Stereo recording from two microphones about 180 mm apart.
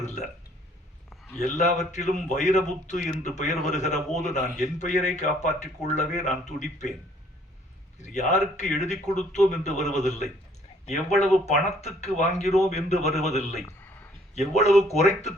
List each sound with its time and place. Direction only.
0.0 s burping: 40° left (ahead or behind)
1.4 s speech: 40° left (ahead or behind)
8.0 s speech: 40° left (ahead or behind)
11.1 s speech: centre (ahead or behind)
11.4 s speech: 40° left (ahead or behind)
13.7 s a sound: 10° left (ahead or behind)
14.3 s speech: 35° left (ahead or behind)